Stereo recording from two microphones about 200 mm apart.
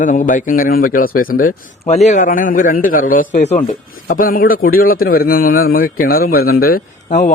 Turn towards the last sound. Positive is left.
turn(degrees=35)  # may be behind; listen again after turning